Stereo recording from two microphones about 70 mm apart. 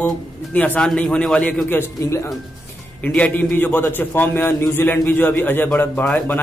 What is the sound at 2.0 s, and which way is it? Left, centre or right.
Speech, left.